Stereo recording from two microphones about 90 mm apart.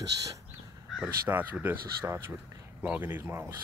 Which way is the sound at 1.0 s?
20° right (ahead or behind).